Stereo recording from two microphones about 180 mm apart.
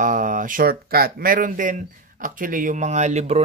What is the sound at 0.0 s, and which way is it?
Speech, 45° right (ahead or behind).